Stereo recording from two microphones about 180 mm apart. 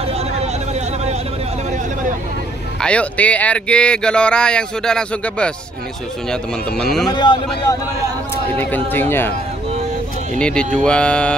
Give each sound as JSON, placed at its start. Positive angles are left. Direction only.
{"t": 0.0, "sound": "vehicle", "side_deg": -35}
{"t": 2.8, "sound": "speech", "side_deg": 5}
{"t": 6.8, "sound": "speech", "side_deg": 0}
{"t": 7.1, "sound": "speech", "side_deg": 25}
{"t": 8.5, "sound": "speech", "side_deg": 10}
{"t": 10.4, "sound": "speech", "side_deg": 5}